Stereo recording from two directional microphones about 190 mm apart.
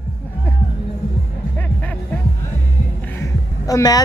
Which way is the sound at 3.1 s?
15° left (ahead or behind).